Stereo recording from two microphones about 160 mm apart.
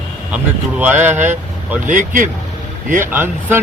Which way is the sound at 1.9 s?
55° right (ahead or behind).